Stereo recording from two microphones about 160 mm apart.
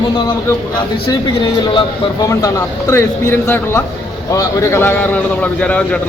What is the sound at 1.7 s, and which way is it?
A man's voice, 20° left (ahead or behind).